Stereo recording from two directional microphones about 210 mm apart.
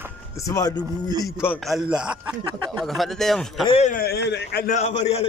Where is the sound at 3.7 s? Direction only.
35° left (ahead or behind); by 4.7 s 55° left (ahead or behind).